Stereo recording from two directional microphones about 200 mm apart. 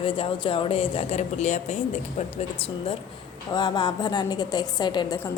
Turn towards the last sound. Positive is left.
turn(degrees=20)  # may be behind; listen again after turning